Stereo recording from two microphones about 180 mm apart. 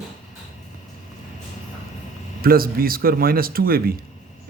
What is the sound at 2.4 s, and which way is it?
A man's voice, 55° right (ahead or behind).